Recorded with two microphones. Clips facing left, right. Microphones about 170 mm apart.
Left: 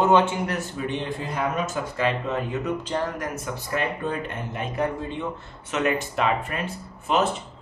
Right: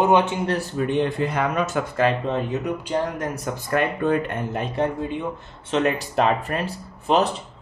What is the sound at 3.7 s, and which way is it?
Speech, 55° right (ahead or behind).